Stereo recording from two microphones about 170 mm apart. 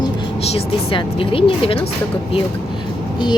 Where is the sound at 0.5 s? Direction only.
30° left (ahead or behind).